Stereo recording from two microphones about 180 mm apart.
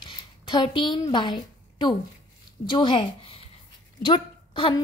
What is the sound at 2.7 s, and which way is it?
A woman's voice, 25° left (ahead or behind).